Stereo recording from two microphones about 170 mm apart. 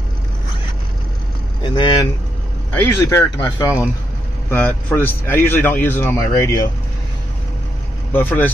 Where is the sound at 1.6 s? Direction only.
25° left (ahead or behind).